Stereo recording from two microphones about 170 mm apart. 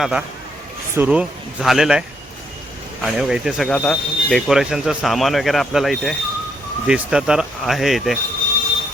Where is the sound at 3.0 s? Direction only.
Centre (ahead or behind).